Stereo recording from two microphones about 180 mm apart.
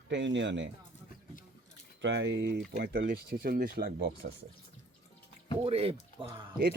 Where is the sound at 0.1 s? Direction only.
85° right.